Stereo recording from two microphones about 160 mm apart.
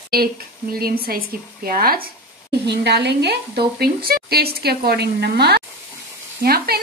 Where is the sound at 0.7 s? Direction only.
70° right (ahead or behind).